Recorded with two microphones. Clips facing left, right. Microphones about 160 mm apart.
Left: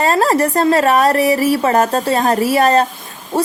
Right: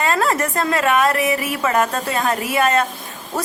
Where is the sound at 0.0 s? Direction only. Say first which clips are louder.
Left 5 dB; 35° left (ahead or behind).